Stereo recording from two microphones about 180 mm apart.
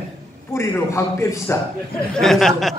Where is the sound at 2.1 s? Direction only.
Centre (ahead or behind).